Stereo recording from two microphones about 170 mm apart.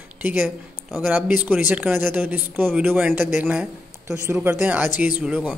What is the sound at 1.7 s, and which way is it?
Speech, 10° right (ahead or behind).